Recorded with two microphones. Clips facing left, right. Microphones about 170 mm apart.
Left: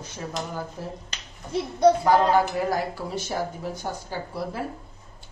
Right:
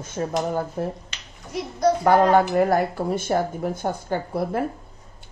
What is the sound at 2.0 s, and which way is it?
A woman's voice, 60° right (ahead or behind).